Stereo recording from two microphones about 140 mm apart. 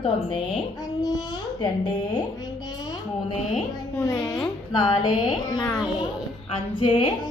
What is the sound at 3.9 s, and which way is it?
Speech, 20° left (ahead or behind).